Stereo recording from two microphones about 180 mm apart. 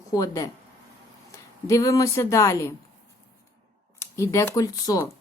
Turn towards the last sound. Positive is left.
turn(degrees=20)  # may be behind; listen again after turning